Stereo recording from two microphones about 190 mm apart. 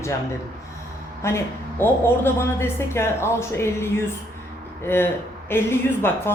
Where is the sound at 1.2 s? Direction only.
10° left (ahead or behind).